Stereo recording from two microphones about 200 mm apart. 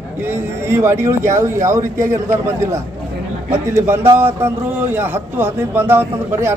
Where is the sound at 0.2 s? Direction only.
10° right (ahead or behind).